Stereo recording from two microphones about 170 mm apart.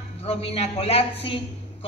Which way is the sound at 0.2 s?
35° left (ahead or behind).